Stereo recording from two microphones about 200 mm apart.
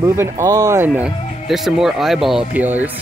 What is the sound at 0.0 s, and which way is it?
Speech, 15° right (ahead or behind).